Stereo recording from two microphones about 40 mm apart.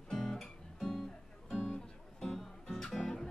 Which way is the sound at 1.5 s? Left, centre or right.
Centre.